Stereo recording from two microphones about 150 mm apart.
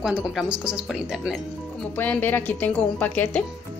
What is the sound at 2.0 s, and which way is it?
Speech, 10° left (ahead or behind).